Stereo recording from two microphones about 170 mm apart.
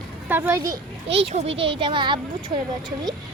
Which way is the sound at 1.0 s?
35° right (ahead or behind).